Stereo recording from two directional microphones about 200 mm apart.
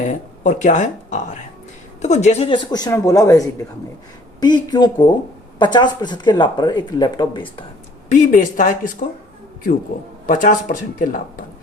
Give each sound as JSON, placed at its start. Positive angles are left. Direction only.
{"t": 0.1, "sound": "speech", "side_deg": 40}
{"t": 8.1, "sound": "speech", "side_deg": 40}
{"t": 10.2, "sound": "speech", "side_deg": 40}